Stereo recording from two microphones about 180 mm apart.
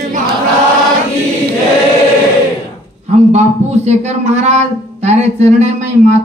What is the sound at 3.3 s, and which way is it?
A man's voice, 40° right (ahead or behind).